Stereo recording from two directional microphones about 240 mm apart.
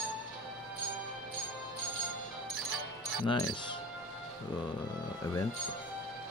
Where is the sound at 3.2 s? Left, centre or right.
Centre.